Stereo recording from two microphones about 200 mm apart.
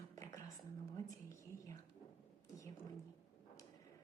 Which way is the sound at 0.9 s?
15° left (ahead or behind).